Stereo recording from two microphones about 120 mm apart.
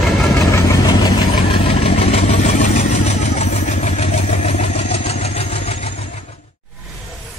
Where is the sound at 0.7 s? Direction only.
35° left (ahead or behind).